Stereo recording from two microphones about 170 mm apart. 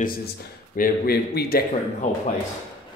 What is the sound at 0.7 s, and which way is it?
Speech, 60° left (ahead or behind).